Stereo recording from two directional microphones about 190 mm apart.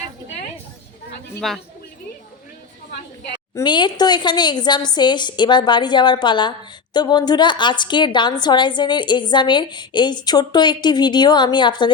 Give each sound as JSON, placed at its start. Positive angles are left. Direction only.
{"t": 1.4, "sound": "a man's voice", "side_deg": 0}
{"t": 3.5, "sound": "a woman's voice", "side_deg": 25}